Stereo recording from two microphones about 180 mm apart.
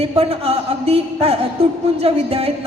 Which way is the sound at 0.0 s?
35° right (ahead or behind).